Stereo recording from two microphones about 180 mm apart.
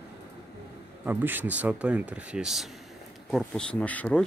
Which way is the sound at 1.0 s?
10° right (ahead or behind).